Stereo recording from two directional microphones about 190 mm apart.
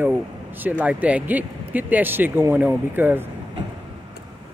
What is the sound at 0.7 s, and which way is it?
Speech, 10° right (ahead or behind).